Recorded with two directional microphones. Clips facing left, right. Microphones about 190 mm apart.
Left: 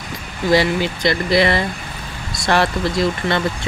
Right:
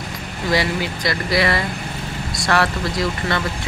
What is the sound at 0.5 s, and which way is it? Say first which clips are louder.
Speech: left 5 dB; 25° left (ahead or behind).